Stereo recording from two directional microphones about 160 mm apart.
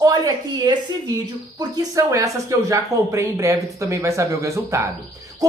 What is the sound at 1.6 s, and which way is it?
Speech, 20° right (ahead or behind).